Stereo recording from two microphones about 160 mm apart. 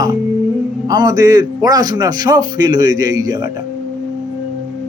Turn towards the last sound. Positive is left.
turn(degrees=-25)  # may be behind; listen again after turning